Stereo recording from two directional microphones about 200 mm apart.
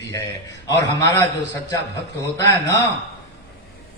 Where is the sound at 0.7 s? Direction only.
15° left (ahead or behind).